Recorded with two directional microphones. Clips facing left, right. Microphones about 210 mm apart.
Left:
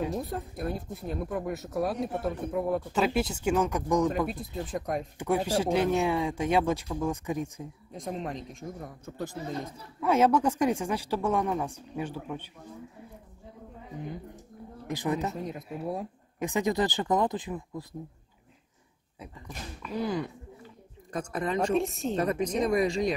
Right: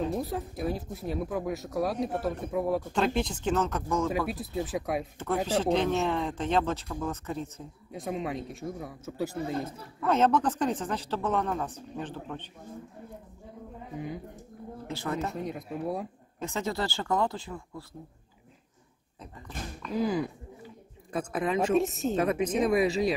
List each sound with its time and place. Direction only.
0.1 s speech: centre (ahead or behind); by 4.1 s 15° left (ahead or behind)
4.3 s speech: 5° right (ahead or behind)
5.2 s speech: 10° left (ahead or behind)
7.9 s speech: 5° right (ahead or behind)
9.9 s speech: 10° left (ahead or behind)
14.9 s speech: 15° left (ahead or behind)
15.3 s speech: centre (ahead or behind)
16.3 s speech: 15° left (ahead or behind)
19.9 s speech: 5° right (ahead or behind)